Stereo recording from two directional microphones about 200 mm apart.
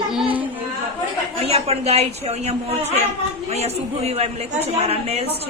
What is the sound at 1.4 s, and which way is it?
A man's voice, 30° right (ahead or behind).